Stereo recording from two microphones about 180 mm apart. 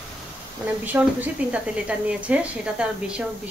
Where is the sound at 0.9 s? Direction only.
10° right (ahead or behind).